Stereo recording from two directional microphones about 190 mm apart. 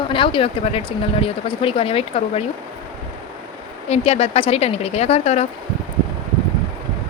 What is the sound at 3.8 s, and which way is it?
Speech, 35° left (ahead or behind).